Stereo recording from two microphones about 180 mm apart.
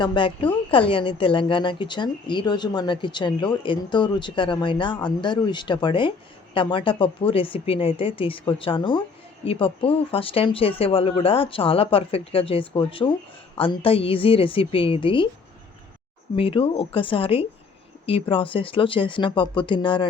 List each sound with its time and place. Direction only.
0.0 s speech: 25° left (ahead or behind)
16.3 s speech: 30° left (ahead or behind)